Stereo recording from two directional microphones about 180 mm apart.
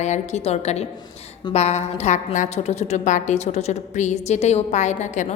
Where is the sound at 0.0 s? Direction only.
40° left (ahead or behind).